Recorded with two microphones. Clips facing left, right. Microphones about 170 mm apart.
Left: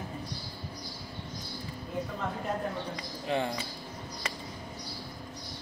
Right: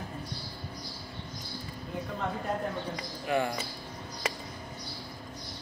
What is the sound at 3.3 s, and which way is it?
Speech, 25° left (ahead or behind).